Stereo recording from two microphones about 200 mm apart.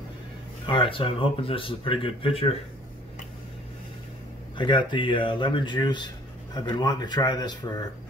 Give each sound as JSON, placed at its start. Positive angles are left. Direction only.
{"t": 0.7, "sound": "speech", "side_deg": 25}
{"t": 4.6, "sound": "speech", "side_deg": 25}